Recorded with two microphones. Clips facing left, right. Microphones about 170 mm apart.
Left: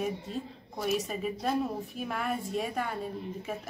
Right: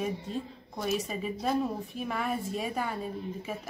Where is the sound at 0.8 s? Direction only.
Centre (ahead or behind).